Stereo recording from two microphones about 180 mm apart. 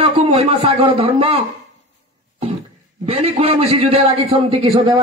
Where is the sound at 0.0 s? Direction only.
30° right (ahead or behind).